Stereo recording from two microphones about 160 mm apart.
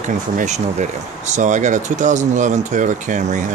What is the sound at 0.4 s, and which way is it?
Speech, 45° right (ahead or behind).